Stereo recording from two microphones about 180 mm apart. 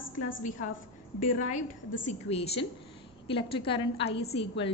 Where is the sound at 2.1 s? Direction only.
35° left (ahead or behind).